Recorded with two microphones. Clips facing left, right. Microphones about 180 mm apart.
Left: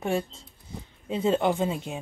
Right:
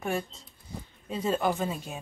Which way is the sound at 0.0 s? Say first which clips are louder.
Left 4 dB; 25° left (ahead or behind).